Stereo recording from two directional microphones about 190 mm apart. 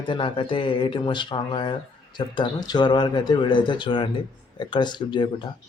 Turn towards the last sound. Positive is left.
turn(degrees=25)  # may be behind; listen again after turning